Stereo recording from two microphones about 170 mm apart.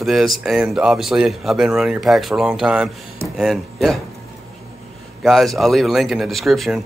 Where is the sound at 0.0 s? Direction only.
Centre (ahead or behind).